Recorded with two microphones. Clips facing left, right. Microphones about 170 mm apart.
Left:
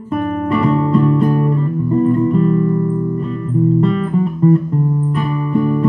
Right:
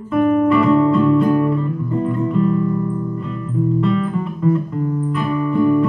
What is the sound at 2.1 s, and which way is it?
Music, 40° left (ahead or behind).